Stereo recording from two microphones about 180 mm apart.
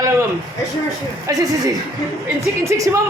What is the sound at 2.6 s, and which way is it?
Speech, 15° right (ahead or behind).